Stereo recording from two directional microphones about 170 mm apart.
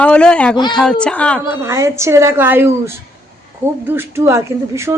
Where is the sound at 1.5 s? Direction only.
15° right (ahead or behind).